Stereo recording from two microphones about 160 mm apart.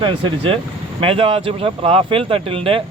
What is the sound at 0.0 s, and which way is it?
Speech, 35° right (ahead or behind).